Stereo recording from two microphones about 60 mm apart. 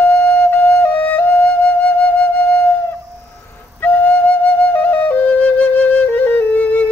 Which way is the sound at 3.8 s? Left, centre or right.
Left.